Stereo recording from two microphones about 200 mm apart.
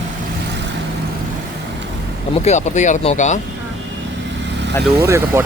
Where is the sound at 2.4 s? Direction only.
35° left (ahead or behind).